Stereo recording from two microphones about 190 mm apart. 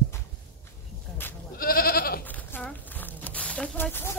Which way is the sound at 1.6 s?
50° left (ahead or behind).